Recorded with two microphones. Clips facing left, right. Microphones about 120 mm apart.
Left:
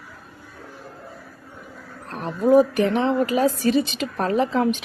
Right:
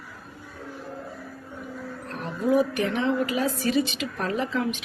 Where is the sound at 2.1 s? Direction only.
40° left (ahead or behind).